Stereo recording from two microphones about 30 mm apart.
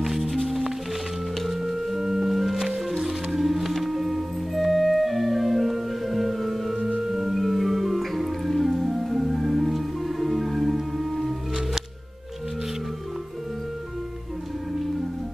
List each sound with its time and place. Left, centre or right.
0.0 s music: centre
7.0 s singing bowl: centre
7.2 s music: centre
8.7 s music: centre